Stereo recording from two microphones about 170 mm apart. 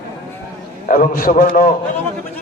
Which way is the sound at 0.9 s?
55° left (ahead or behind).